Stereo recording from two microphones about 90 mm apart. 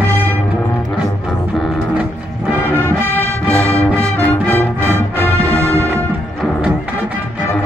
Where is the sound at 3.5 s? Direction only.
15° left (ahead or behind).